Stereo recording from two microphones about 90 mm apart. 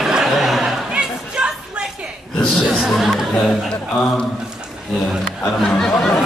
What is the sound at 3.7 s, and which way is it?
Speech, 10° left (ahead or behind).